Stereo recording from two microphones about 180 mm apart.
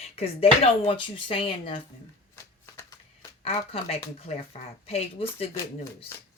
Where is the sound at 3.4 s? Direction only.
35° left (ahead or behind).